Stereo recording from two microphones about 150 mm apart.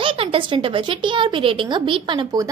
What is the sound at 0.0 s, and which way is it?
Speech, 35° right (ahead or behind).